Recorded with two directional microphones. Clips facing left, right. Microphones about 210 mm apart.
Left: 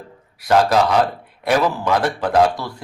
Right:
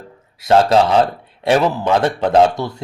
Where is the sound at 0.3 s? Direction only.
25° right (ahead or behind).